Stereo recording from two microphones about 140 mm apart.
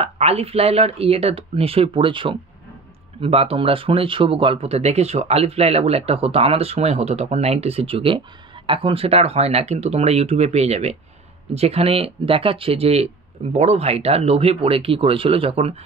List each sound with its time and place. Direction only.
0.0 s speech: 45° right (ahead or behind)